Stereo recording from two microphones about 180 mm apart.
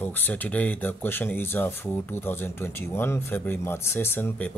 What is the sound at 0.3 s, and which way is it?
Speech, 10° left (ahead or behind).